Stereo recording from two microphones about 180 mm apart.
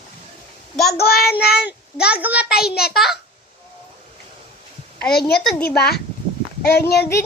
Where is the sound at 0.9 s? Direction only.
60° left (ahead or behind).